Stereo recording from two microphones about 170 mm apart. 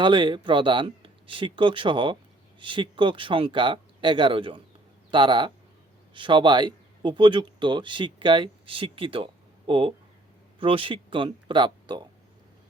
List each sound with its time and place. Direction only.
0.0 s speech: 30° right (ahead or behind)